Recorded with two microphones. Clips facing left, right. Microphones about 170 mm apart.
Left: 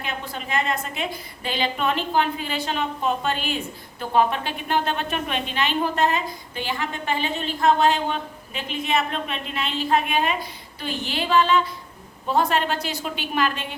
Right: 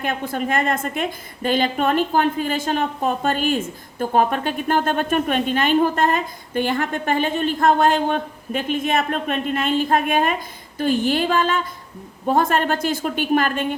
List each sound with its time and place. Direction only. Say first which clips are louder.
0.0 s a woman's voice: right 8 dB; 50° right (ahead or behind)